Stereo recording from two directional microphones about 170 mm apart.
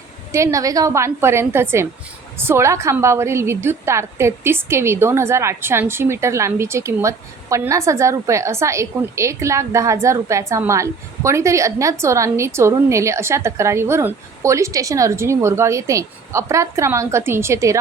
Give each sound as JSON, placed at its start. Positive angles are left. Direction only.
{"t": 0.3, "sound": "a woman's voice", "side_deg": -15}